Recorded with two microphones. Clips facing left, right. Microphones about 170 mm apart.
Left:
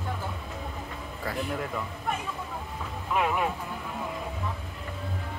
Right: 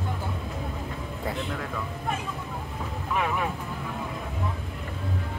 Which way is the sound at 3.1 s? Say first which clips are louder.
Left 1 dB; 15° left (ahead or behind).